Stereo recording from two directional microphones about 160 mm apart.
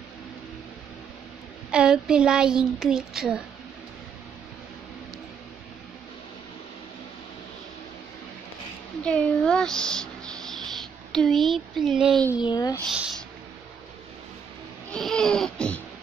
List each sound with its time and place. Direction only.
1.7 s a woman's voice: 5° right (ahead or behind)
9.0 s a sound: 5° left (ahead or behind)
11.1 s a woman's voice: 5° left (ahead or behind)
12.4 s speech: 25° left (ahead or behind)
12.8 s speech: 5° right (ahead or behind)
14.9 s a sound: 5° left (ahead or behind)